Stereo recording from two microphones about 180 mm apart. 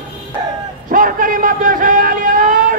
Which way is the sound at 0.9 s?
50° right (ahead or behind).